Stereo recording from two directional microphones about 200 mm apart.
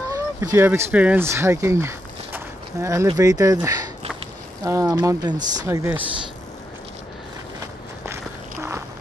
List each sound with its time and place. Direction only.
0.1 s speech: 15° right (ahead or behind)